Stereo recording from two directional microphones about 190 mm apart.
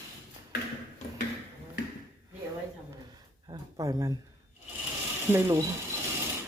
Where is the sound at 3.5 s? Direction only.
20° right (ahead or behind).